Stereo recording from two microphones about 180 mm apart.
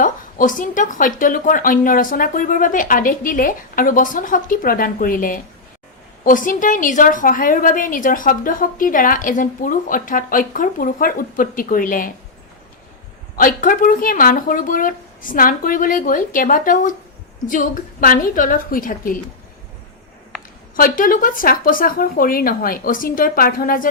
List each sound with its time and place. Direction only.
0.0 s a woman's voice: 50° left (ahead or behind)
13.3 s a woman's voice: 50° left (ahead or behind)
20.7 s a woman's voice: 50° left (ahead or behind)